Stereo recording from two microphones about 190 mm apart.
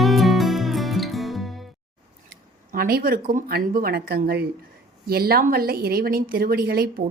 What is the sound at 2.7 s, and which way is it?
A woman's voice, 55° right (ahead or behind).